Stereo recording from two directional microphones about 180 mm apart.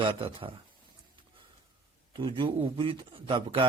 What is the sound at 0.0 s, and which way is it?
Speech, 30° right (ahead or behind).